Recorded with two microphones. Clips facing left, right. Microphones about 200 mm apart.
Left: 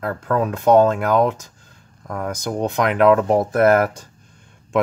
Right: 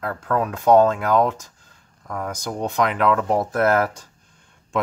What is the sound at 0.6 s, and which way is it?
Speech, 20° left (ahead or behind).